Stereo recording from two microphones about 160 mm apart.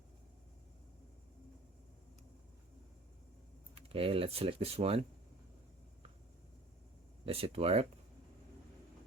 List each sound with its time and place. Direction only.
3.8 s speech: 35° right (ahead or behind)
7.3 s speech: 40° right (ahead or behind)